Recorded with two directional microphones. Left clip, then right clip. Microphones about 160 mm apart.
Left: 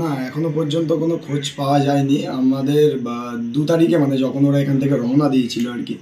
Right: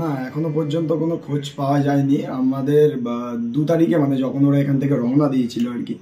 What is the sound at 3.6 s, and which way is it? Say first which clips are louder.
Speech: left 2 dB; 5° right (ahead or behind).